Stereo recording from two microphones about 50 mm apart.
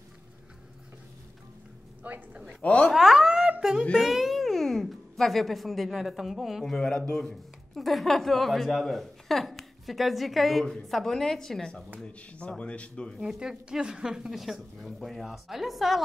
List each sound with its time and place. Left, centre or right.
2.0 s speech: right
2.6 s speech: left
2.9 s a sound: centre
4.0 s speech: centre
6.6 s a woman's voice: centre
12.0 s speech: left
13.2 s speech: centre
14.4 s a woman's voice: centre